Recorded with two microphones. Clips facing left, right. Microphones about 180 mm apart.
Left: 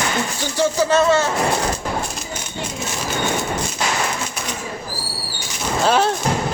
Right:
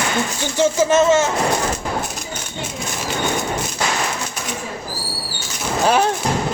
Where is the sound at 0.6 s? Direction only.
20° right (ahead or behind).